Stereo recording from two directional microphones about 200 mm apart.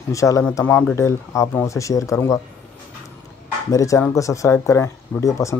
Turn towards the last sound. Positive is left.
turn(degrees=15)  # may be behind; listen again after turning